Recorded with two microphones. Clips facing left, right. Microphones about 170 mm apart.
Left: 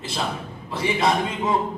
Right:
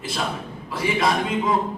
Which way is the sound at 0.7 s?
25° left (ahead or behind).